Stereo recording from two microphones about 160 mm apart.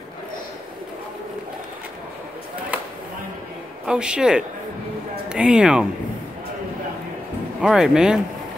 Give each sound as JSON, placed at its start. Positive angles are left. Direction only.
{"t": 3.8, "sound": "a man's voice", "side_deg": -5}
{"t": 7.6, "sound": "a man's voice", "side_deg": -5}